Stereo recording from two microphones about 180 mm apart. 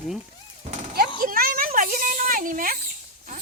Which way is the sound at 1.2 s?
55° right (ahead or behind).